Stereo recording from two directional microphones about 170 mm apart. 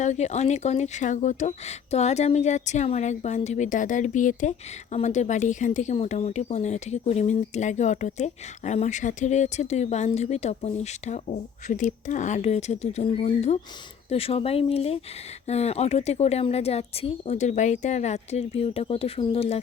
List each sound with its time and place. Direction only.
0.0 s speech: 40° left (ahead or behind)